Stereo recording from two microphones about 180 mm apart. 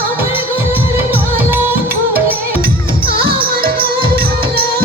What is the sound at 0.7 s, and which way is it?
Music, 10° right (ahead or behind).